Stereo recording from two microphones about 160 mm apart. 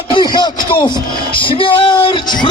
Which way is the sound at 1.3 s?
30° left (ahead or behind).